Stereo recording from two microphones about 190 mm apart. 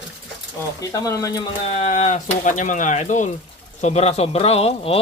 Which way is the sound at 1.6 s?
35° left (ahead or behind).